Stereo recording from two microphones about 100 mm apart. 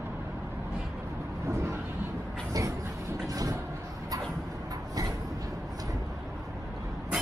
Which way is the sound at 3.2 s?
35° right (ahead or behind).